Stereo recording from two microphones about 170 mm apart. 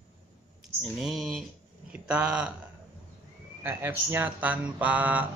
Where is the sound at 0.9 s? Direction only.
Centre (ahead or behind).